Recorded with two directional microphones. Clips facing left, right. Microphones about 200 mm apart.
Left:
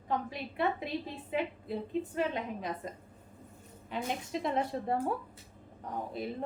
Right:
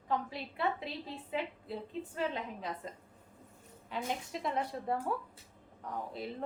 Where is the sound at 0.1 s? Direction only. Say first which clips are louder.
Left 1 dB; 15° left (ahead or behind).